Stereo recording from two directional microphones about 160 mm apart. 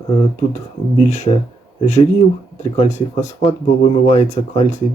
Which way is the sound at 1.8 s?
45° left (ahead or behind).